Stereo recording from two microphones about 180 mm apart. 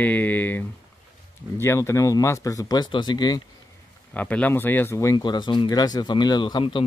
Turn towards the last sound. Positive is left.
turn(degrees=30)  # may be behind; listen again after turning